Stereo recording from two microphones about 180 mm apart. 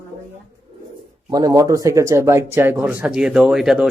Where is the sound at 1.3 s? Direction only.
20° right (ahead or behind).